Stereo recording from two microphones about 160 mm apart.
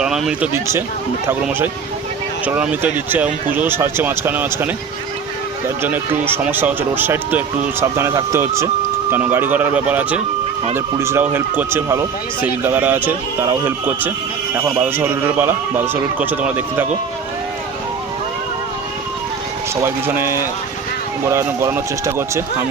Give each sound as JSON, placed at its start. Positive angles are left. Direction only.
{"t": 0.0, "sound": "speech", "side_deg": -5}
{"t": 0.5, "sound": "speech", "side_deg": -15}
{"t": 19.7, "sound": "speech", "side_deg": -15}